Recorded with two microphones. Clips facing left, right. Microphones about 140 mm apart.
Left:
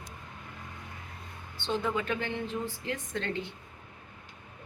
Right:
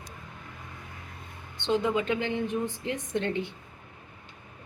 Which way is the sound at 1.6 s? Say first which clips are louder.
Right 5 dB; 15° right (ahead or behind).